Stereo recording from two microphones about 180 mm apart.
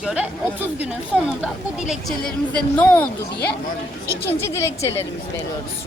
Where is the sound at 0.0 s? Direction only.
5° right (ahead or behind).